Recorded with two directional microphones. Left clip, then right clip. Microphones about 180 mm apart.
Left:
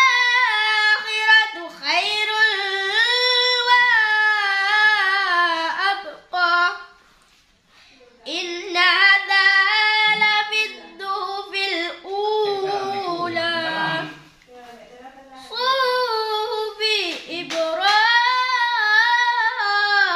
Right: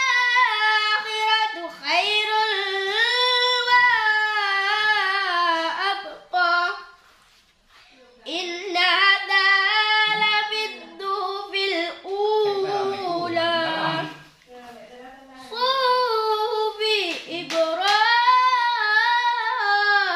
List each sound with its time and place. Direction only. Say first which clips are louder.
0.0 s child singing: left 3 dB; 20° left (ahead or behind)
6.3 s female singing: left 2 dB; 20° left (ahead or behind)
8.3 s child singing: left 1 dB; 25° left (ahead or behind)
13.0 s a sound: even; 20° left (ahead or behind)
15.5 s child singing: left 1 dB; 25° left (ahead or behind)